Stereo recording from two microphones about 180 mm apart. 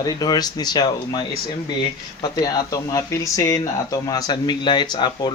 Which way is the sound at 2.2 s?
25° left (ahead or behind).